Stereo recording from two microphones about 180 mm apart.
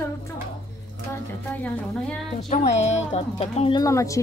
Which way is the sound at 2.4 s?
40° left (ahead or behind).